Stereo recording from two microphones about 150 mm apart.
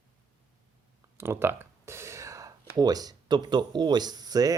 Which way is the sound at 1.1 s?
15° right (ahead or behind).